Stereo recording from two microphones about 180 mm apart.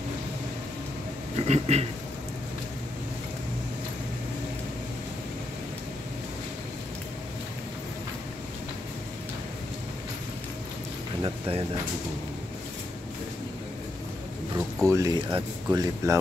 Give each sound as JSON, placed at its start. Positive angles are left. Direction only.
{"t": 1.4, "sound": "speech", "side_deg": -35}
{"t": 11.2, "sound": "speech", "side_deg": -30}
{"t": 14.8, "sound": "speech", "side_deg": -15}